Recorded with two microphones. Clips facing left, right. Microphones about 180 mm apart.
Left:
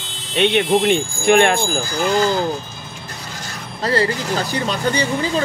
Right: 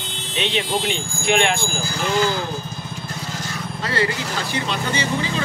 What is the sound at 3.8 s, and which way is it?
Speech, 35° left (ahead or behind).